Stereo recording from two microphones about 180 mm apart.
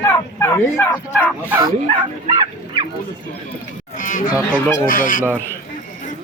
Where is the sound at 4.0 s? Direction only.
50° left (ahead or behind).